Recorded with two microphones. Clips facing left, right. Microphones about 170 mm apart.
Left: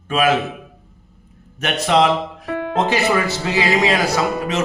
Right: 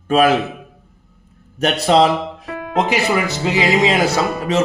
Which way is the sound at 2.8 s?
15° right (ahead or behind).